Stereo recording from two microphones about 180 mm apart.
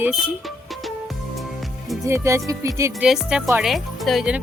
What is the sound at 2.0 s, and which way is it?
Speech, 15° right (ahead or behind).